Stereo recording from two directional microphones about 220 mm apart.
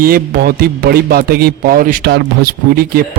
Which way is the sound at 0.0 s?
45° right (ahead or behind).